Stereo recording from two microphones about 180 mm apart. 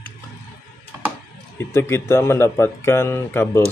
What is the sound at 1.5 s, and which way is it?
Speech, 15° left (ahead or behind).